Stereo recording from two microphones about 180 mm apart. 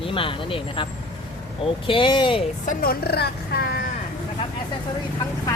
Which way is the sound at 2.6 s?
55° left (ahead or behind).